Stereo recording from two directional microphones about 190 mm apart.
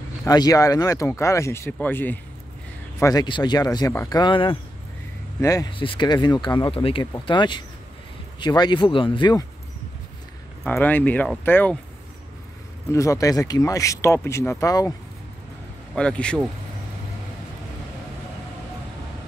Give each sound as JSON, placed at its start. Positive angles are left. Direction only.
{"t": 0.2, "sound": "speech", "side_deg": 20}
{"t": 10.6, "sound": "speech", "side_deg": 10}
{"t": 12.9, "sound": "speech", "side_deg": 15}
{"t": 15.9, "sound": "speech", "side_deg": 5}